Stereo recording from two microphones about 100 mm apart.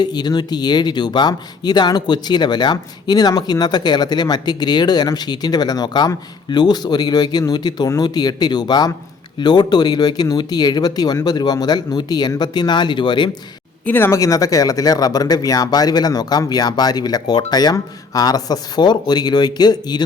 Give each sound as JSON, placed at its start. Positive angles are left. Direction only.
{"t": 0.0, "sound": "speech", "side_deg": 45}
{"t": 13.8, "sound": "speech", "side_deg": 20}
{"t": 14.2, "sound": "speech", "side_deg": 35}